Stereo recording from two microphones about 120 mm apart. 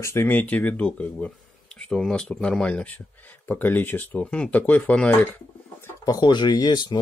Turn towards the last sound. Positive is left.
turn(degrees=35)  # may be behind; listen again after turning